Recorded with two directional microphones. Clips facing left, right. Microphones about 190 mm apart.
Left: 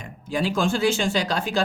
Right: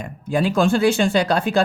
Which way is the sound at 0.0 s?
55° right (ahead or behind).